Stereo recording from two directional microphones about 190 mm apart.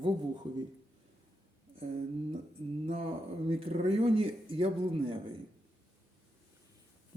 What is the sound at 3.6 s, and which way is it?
Speech, 30° right (ahead or behind).